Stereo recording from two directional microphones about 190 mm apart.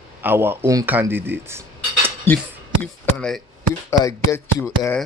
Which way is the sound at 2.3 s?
10° left (ahead or behind).